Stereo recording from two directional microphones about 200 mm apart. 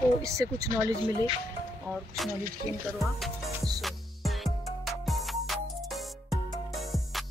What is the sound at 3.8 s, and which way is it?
Music, centre (ahead or behind).